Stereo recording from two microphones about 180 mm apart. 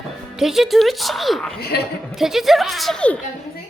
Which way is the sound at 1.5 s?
60° left (ahead or behind).